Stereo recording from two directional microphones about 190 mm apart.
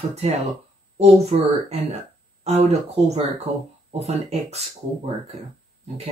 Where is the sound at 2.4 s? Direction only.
35° right (ahead or behind).